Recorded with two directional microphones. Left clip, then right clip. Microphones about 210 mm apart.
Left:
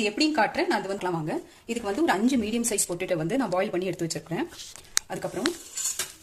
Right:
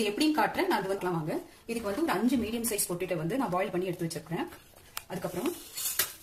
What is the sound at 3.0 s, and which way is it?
Speech, 50° left (ahead or behind).